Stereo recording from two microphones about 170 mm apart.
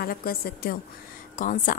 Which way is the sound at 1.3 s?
50° left (ahead or behind).